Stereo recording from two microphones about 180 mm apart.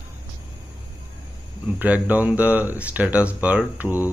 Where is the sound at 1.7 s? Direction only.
10° right (ahead or behind).